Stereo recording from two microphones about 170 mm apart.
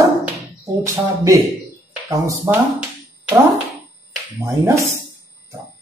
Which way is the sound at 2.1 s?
20° right (ahead or behind).